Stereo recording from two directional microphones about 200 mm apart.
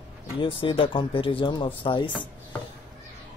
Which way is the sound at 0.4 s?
25° left (ahead or behind).